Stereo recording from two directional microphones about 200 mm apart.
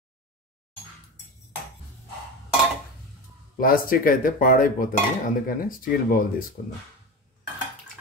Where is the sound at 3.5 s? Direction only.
45° left (ahead or behind).